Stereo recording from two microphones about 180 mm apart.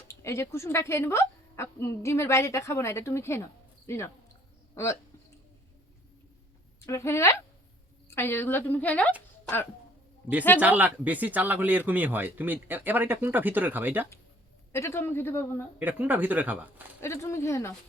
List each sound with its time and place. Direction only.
0.1 s a woman's voice: 15° left (ahead or behind)
6.8 s a woman's voice: 15° left (ahead or behind)
10.6 s speech: 10° right (ahead or behind)
14.7 s a woman's voice: 15° left (ahead or behind)
15.8 s speech: 10° right (ahead or behind)
17.0 s a woman's voice: 15° left (ahead or behind)